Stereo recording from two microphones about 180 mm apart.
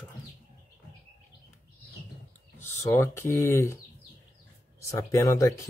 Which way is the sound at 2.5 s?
15° left (ahead or behind).